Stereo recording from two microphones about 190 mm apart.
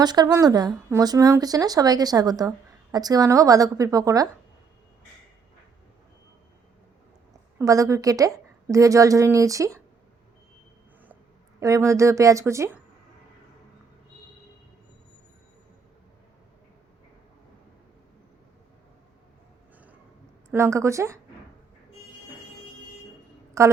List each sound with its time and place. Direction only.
0.0 s a woman's voice: 20° right (ahead or behind)
7.6 s a woman's voice: 15° right (ahead or behind)
11.6 s a woman's voice: 15° right (ahead or behind)
20.5 s a woman's voice: 15° right (ahead or behind)
23.6 s a woman's voice: 15° right (ahead or behind)